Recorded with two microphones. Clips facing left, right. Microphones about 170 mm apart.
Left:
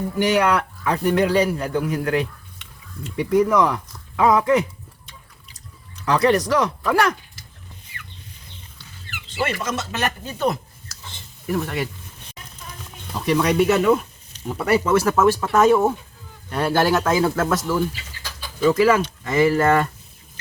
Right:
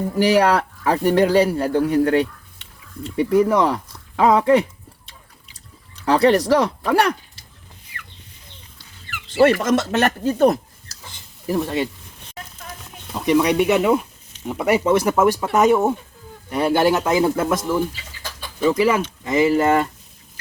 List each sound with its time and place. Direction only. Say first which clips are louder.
0.2 s speech: right 3 dB; 35° right (ahead or behind)
6.1 s speech: right 3 dB; 30° right (ahead or behind)
9.4 s speech: right 10 dB; 70° right (ahead or behind)
11.4 s speech: right 3 dB; 25° right (ahead or behind)
13.2 s speech: right 1 dB; 15° right (ahead or behind)